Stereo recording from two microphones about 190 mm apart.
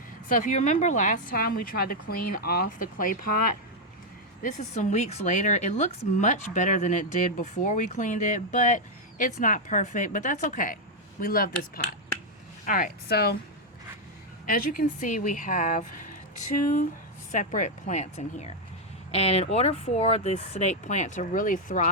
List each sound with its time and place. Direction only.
0.3 s a woman's voice: 45° left (ahead or behind)
14.4 s speech: 45° left (ahead or behind)
17.3 s a woman's voice: 40° left (ahead or behind)